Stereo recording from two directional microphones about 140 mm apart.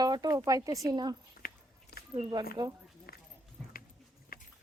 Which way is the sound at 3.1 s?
90° left.